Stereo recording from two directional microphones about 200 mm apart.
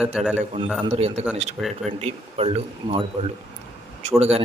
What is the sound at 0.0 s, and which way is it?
Speech, centre (ahead or behind).